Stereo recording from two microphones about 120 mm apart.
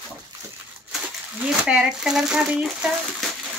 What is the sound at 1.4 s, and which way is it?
Speech, 5° right (ahead or behind).